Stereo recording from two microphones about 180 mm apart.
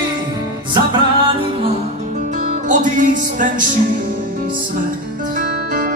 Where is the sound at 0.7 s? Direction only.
25° right (ahead or behind).